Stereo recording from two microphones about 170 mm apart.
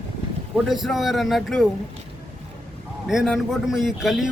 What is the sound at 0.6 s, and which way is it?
A man's voice, centre (ahead or behind).